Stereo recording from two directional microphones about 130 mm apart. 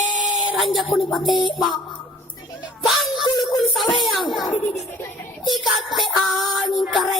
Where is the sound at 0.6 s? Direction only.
Centre (ahead or behind).